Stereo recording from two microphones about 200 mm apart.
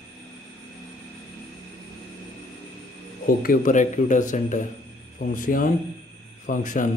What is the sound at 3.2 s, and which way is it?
Speech, 45° left (ahead or behind).